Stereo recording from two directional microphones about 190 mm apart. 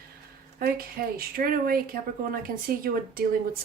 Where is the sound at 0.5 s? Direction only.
50° right (ahead or behind).